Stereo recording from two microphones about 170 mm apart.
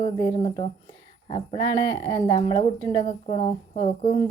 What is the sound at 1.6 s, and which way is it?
Speech, 20° left (ahead or behind).